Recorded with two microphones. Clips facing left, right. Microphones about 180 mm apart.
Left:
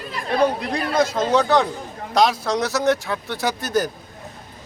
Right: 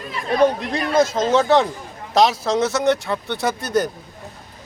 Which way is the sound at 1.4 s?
30° right (ahead or behind).